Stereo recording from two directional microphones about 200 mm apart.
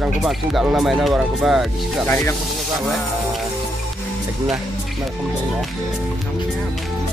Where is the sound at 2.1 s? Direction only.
10° left (ahead or behind).